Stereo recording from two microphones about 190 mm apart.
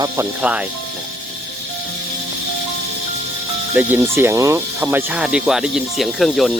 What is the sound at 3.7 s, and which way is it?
Speech, 10° right (ahead or behind).